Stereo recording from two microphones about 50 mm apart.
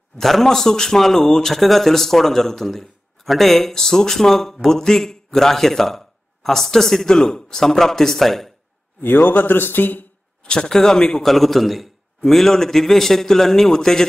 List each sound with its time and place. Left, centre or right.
0.2 s a man's voice: centre
9.0 s a man's voice: left
10.4 s a man's voice: centre
11.2 s a man's voice: centre